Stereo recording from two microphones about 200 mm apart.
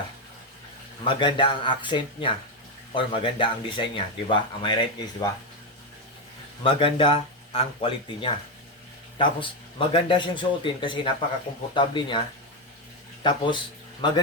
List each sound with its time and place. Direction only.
1.0 s speech: 25° left (ahead or behind)
6.6 s speech: 25° left (ahead or behind)
13.2 s speech: 25° left (ahead or behind)